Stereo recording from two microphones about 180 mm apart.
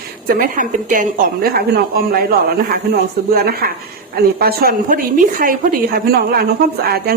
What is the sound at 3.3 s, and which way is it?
A woman's voice, 55° right (ahead or behind).